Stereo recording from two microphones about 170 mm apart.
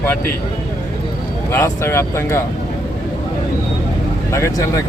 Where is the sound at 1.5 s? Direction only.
15° left (ahead or behind).